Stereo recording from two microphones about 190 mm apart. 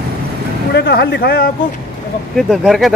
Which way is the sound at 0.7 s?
60° left (ahead or behind).